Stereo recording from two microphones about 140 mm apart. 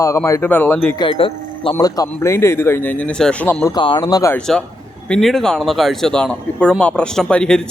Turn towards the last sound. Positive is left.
turn(degrees=5)  # may be behind; listen again after turning